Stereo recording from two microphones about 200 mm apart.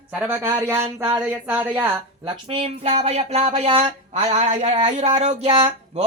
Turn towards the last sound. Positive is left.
turn(degrees=-30)  # may be behind; listen again after turning